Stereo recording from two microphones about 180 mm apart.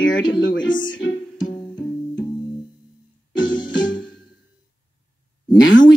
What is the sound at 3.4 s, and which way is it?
Music, 90° left.